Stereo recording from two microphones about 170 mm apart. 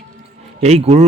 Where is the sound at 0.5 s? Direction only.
40° right (ahead or behind).